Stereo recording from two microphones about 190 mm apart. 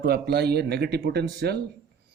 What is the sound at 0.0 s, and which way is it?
Speech, 55° right (ahead or behind).